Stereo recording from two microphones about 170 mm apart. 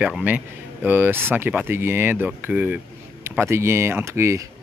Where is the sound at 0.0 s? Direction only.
10° right (ahead or behind).